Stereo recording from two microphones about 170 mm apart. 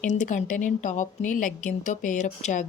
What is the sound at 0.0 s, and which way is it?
A woman's voice, 45° left (ahead or behind).